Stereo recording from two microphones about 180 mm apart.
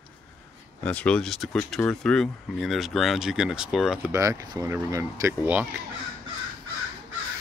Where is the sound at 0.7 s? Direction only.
5° left (ahead or behind).